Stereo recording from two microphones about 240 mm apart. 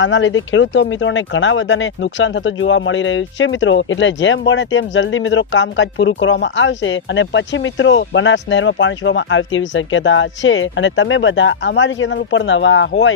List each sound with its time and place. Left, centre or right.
0.0 s speech: left